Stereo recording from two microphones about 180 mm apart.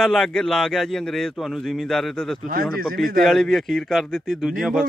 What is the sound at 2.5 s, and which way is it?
Speech, 55° right (ahead or behind).